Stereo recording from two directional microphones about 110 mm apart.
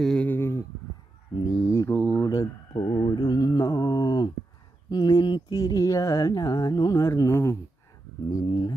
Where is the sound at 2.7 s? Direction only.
50° left (ahead or behind); by 7.6 s 25° left (ahead or behind).